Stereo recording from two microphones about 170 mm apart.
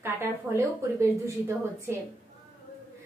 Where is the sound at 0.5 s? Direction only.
15° right (ahead or behind).